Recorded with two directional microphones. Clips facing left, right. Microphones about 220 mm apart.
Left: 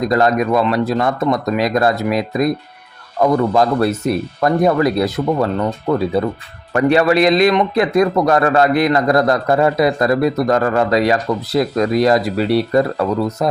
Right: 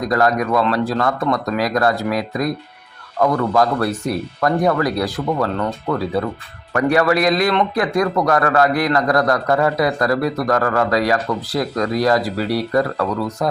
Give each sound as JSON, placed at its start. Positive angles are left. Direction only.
{"t": 0.0, "sound": "a man's voice", "side_deg": 25}